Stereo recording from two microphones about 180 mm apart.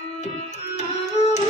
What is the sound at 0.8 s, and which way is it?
Music, 35° left (ahead or behind).